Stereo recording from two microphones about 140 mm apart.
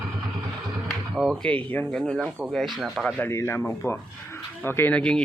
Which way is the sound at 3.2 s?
20° left (ahead or behind).